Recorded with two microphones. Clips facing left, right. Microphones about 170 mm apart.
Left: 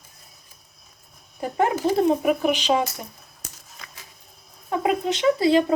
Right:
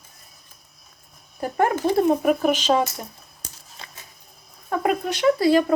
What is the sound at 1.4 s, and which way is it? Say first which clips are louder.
Speech: right 1 dB; 15° left (ahead or behind).